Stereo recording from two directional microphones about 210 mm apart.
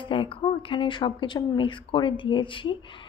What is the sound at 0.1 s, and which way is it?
Speech, 25° left (ahead or behind).